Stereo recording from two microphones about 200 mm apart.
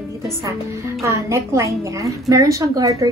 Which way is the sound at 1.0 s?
15° right (ahead or behind).